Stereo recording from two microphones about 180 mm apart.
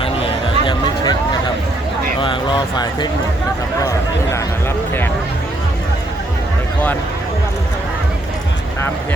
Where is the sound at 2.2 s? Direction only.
25° left (ahead or behind).